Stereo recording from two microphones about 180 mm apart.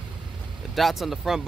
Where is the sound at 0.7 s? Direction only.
Centre (ahead or behind).